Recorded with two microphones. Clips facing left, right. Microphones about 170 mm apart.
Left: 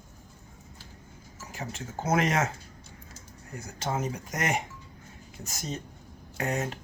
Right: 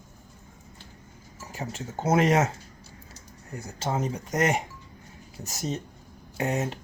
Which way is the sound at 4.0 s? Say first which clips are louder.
Right 5 dB; 35° right (ahead or behind).